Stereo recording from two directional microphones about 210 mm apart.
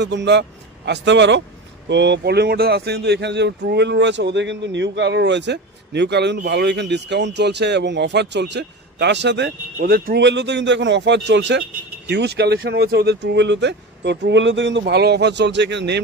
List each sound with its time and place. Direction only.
0.0 s speech: 55° right (ahead or behind)